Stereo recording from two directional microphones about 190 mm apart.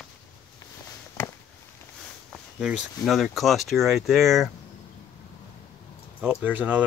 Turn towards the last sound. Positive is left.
turn(degrees=-5)  # may be behind; listen again after turning